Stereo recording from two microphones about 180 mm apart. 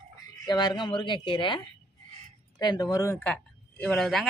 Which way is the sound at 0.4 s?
25° left (ahead or behind).